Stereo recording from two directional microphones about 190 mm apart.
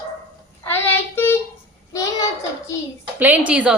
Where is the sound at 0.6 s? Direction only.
10° left (ahead or behind).